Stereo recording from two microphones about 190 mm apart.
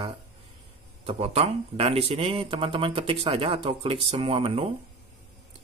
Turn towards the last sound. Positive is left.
turn(degrees=-30)  # may be behind; listen again after turning